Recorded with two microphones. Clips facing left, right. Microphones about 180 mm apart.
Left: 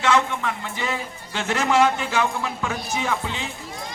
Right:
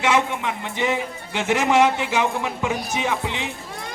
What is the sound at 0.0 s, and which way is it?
A man's voice, 15° right (ahead or behind).